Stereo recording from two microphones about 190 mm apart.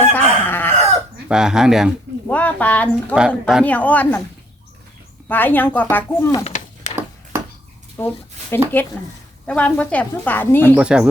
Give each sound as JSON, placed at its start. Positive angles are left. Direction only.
{"t": 0.0, "sound": "chicken", "side_deg": 10}
{"t": 1.3, "sound": "speech", "side_deg": -5}
{"t": 2.2, "sound": "speech", "side_deg": 10}
{"t": 3.2, "sound": "speech", "side_deg": -5}
{"t": 5.3, "sound": "speech", "side_deg": 10}
{"t": 6.4, "sound": "a sound", "side_deg": 35}
{"t": 7.9, "sound": "a sound", "side_deg": 10}
{"t": 9.5, "sound": "speech", "side_deg": 5}
{"t": 10.8, "sound": "speech", "side_deg": -5}